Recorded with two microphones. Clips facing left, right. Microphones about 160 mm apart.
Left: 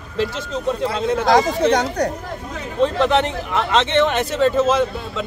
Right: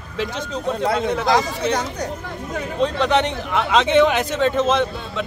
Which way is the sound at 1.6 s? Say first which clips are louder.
Left 5 dB; 75° left (ahead or behind).